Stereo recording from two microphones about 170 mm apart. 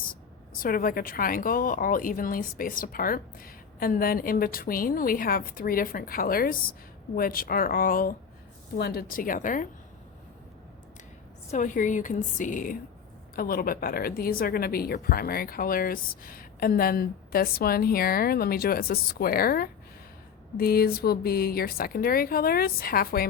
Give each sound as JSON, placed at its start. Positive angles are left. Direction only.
{"t": 0.6, "sound": "a woman's voice", "side_deg": 55}
{"t": 11.5, "sound": "a woman's voice", "side_deg": 50}